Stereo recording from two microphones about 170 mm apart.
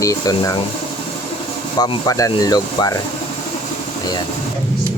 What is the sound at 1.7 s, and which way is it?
Speech, 20° left (ahead or behind).